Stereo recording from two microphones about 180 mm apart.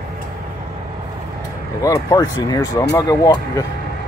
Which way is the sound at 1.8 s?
20° left (ahead or behind).